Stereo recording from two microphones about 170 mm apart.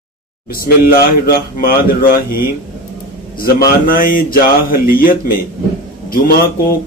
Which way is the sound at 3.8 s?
55° left (ahead or behind).